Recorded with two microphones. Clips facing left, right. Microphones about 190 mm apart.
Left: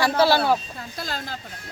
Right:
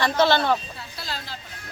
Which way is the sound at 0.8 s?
45° left (ahead or behind).